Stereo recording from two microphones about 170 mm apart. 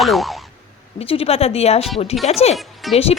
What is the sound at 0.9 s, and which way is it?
Speech, 35° left (ahead or behind).